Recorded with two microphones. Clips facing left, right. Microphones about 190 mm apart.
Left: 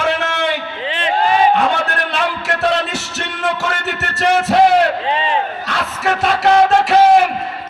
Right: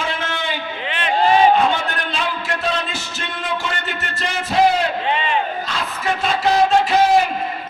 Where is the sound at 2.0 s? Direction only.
75° left (ahead or behind).